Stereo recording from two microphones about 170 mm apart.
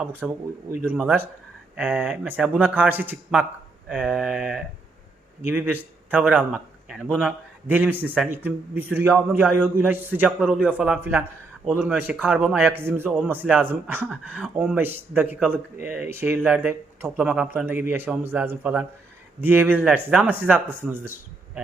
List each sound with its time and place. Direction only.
0.2 s a man's voice: 5° right (ahead or behind)
7.7 s speech: 10° right (ahead or behind)
12.6 s speech: 15° right (ahead or behind)